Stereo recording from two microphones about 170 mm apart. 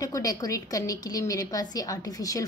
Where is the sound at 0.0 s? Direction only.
20° left (ahead or behind).